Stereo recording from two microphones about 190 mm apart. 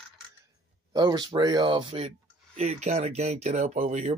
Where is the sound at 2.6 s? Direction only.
35° right (ahead or behind).